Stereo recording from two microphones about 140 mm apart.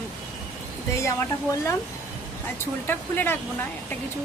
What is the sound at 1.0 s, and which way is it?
Speech, 20° left (ahead or behind).